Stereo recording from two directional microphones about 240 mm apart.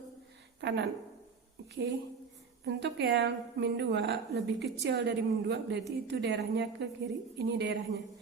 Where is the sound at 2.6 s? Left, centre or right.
Right.